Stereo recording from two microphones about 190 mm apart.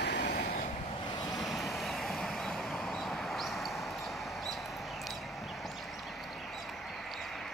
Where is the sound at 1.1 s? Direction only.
20° left (ahead or behind).